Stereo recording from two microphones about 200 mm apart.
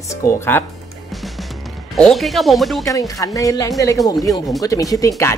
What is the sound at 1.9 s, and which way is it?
Speech, centre (ahead or behind).